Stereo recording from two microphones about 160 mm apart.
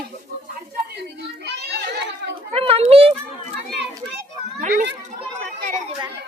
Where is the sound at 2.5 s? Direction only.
35° right (ahead or behind).